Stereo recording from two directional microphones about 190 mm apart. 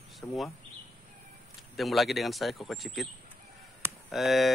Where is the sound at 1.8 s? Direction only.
Centre (ahead or behind).